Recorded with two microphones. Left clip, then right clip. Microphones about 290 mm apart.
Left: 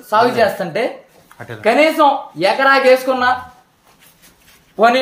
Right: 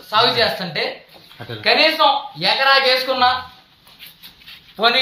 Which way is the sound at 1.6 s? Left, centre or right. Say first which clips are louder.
Left 2 dB; left.